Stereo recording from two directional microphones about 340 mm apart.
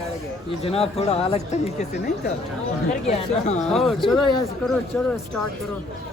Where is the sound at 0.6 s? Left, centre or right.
Centre.